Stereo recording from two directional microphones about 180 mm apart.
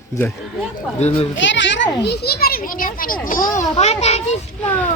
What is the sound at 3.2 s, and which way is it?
Speech, 50° left (ahead or behind).